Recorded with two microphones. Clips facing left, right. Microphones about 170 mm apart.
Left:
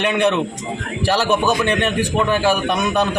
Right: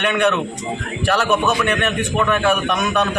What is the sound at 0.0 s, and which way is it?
A man's voice, 30° left (ahead or behind).